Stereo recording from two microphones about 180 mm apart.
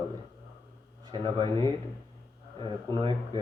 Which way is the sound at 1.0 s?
25° right (ahead or behind).